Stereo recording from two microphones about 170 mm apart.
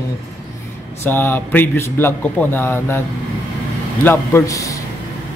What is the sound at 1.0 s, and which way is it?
A man's voice, 15° left (ahead or behind).